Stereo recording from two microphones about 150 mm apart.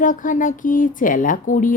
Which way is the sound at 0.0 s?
60° left (ahead or behind).